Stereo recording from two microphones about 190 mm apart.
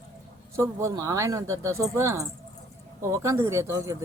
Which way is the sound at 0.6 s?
15° right (ahead or behind).